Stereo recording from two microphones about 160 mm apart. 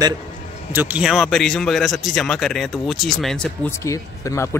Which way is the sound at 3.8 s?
20° left (ahead or behind).